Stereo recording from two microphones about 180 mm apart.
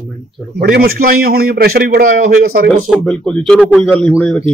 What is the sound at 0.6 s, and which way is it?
A man's voice, 60° right (ahead or behind).